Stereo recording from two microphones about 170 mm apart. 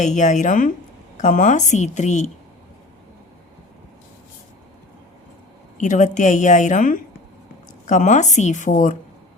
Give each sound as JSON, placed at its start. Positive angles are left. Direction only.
{"t": 0.0, "sound": "speech", "side_deg": 45}
{"t": 5.7, "sound": "speech", "side_deg": 45}